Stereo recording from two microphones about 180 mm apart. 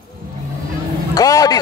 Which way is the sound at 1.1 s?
20° left (ahead or behind).